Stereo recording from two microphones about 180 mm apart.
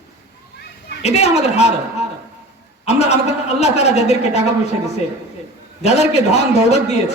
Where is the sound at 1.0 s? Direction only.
35° left (ahead or behind).